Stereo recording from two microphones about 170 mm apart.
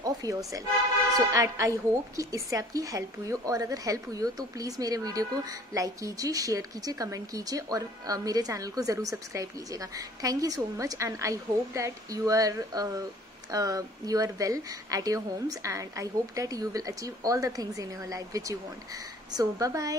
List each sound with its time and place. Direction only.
0.0 s speech: 20° right (ahead or behind)